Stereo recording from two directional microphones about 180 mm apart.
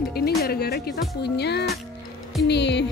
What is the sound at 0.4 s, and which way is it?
Speech, 60° left (ahead or behind).